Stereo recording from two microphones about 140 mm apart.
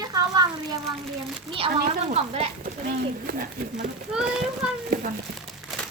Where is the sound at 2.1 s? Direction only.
45° right (ahead or behind).